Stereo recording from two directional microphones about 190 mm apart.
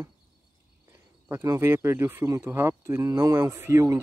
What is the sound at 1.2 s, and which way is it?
Speech, 15° right (ahead or behind).